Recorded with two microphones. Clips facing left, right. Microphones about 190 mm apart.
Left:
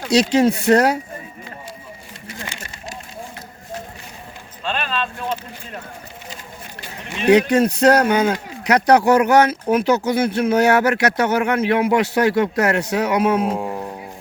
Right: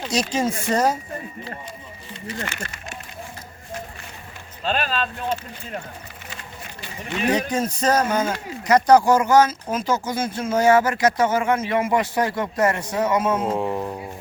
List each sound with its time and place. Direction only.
0.1 s speech: 70° left (ahead or behind)
4.6 s speech: 40° right (ahead or behind)
7.3 s speech: 70° left (ahead or behind)
13.6 s music: 5° left (ahead or behind)